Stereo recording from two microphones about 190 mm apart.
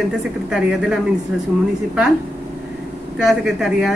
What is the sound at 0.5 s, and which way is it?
Speech, 5° right (ahead or behind).